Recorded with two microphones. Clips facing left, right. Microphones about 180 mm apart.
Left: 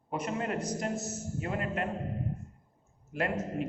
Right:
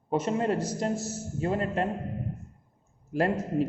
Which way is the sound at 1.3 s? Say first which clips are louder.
Right 6 dB; 30° right (ahead or behind).